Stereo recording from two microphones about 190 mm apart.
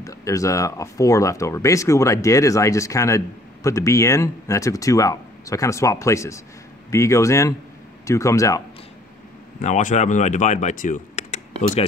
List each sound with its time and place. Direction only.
0.0 s speech: 15° left (ahead or behind)
9.6 s speech: 40° left (ahead or behind)